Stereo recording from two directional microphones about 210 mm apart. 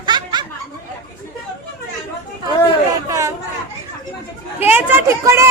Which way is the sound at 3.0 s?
15° right (ahead or behind).